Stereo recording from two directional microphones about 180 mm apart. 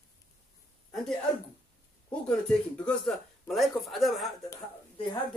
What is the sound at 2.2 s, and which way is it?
Speech, 5° left (ahead or behind).